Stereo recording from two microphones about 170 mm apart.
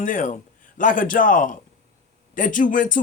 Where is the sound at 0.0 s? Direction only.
50° left (ahead or behind).